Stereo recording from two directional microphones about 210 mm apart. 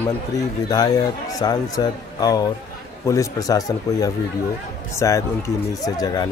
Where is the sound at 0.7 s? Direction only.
20° left (ahead or behind).